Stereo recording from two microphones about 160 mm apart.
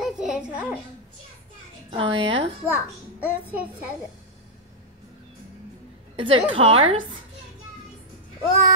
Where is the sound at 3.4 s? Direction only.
10° right (ahead or behind).